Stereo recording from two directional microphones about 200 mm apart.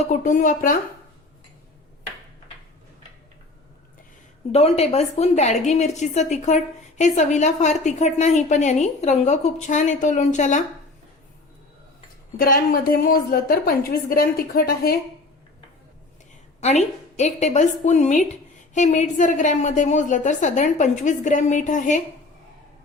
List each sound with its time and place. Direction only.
0.0 s a woman's voice: 40° left (ahead or behind)
4.5 s a woman's voice: 30° left (ahead or behind)
12.4 s a woman's voice: 45° left (ahead or behind)
16.6 s a woman's voice: 35° left (ahead or behind)